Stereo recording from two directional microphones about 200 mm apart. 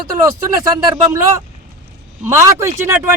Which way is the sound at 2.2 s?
15° right (ahead or behind).